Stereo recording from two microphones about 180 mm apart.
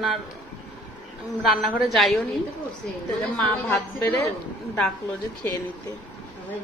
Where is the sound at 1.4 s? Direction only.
Centre (ahead or behind).